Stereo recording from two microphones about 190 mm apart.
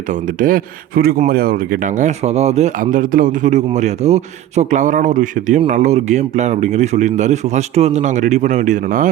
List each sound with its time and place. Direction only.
0.1 s speech: 45° right (ahead or behind)